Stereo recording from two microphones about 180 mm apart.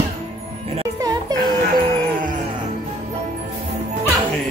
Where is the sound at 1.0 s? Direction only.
20° right (ahead or behind).